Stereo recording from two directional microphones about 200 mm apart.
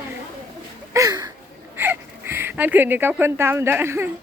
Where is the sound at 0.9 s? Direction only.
15° right (ahead or behind).